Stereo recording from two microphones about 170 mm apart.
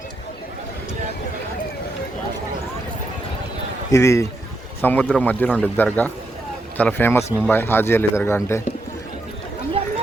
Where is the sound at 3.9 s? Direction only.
20° left (ahead or behind).